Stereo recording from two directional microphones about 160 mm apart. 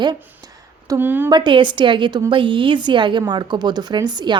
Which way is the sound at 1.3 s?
30° right (ahead or behind).